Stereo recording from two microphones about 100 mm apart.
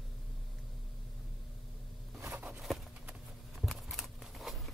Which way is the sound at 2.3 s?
20° right (ahead or behind).